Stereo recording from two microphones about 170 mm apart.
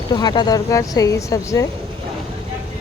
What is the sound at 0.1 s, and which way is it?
Speech, 25° left (ahead or behind).